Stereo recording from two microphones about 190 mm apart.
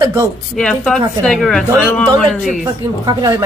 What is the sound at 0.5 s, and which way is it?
A woman's voice, 5° left (ahead or behind).